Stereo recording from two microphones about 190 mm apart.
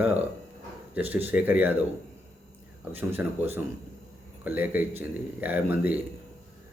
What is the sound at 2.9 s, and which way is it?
Speech, 10° right (ahead or behind).